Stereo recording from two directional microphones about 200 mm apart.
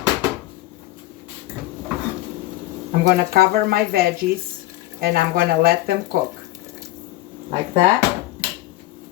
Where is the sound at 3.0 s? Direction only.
50° right (ahead or behind).